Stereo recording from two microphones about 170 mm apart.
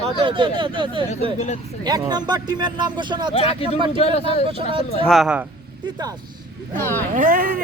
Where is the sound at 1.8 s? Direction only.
25° right (ahead or behind).